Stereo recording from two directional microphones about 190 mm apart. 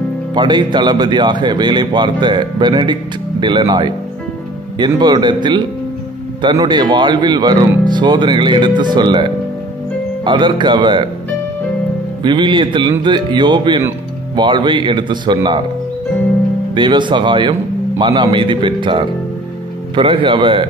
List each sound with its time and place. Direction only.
0.3 s speech: 25° right (ahead or behind)
12.2 s speech: 25° right (ahead or behind)
16.7 s speech: 25° right (ahead or behind)